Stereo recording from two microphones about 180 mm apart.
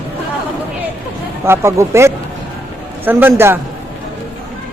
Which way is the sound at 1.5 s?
15° right (ahead or behind).